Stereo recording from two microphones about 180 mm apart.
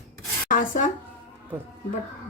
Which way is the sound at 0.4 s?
45° left (ahead or behind).